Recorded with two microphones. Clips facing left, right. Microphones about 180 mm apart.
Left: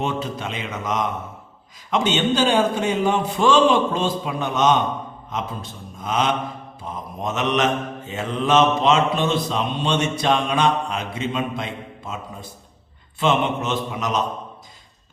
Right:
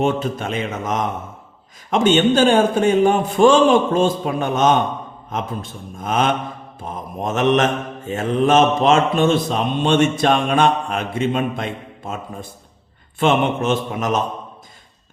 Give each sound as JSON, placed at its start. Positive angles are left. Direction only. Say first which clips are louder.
{"t": 0.0, "sound": "mantra", "louder": "right 5 dB", "side_deg": -50}